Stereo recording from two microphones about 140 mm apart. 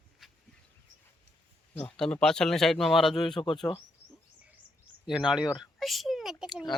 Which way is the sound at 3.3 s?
35° left (ahead or behind).